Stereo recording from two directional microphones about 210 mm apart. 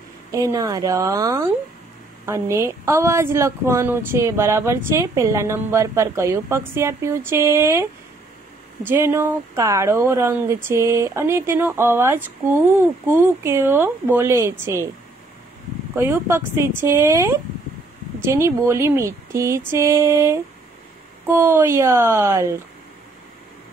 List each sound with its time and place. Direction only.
0.3 s a woman's voice: 15° right (ahead or behind)
8.8 s a woman's voice: 10° right (ahead or behind)
16.0 s a woman's voice: 10° right (ahead or behind)